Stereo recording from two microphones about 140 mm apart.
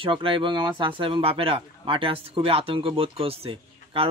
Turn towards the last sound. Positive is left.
turn(degrees=-40)  # may be behind; listen again after turning